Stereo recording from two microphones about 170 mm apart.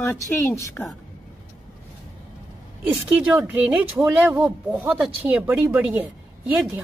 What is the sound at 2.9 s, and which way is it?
Speech, 5° right (ahead or behind).